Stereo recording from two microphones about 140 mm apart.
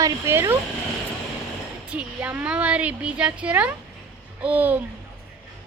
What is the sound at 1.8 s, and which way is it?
Speech, 10° right (ahead or behind).